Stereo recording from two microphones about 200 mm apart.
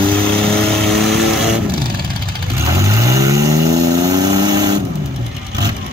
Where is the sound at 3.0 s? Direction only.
15° right (ahead or behind).